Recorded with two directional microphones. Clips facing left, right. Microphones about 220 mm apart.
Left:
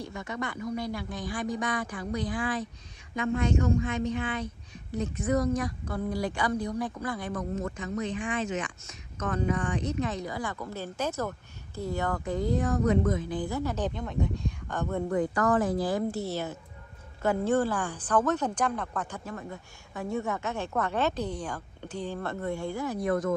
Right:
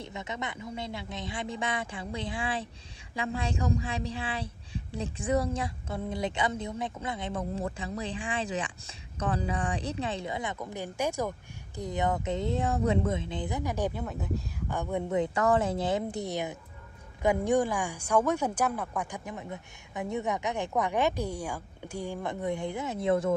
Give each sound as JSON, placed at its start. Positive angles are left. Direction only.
{"t": 0.0, "sound": "speech", "side_deg": -20}